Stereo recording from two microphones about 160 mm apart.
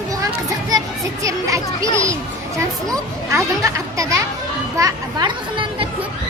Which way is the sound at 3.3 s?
20° right (ahead or behind).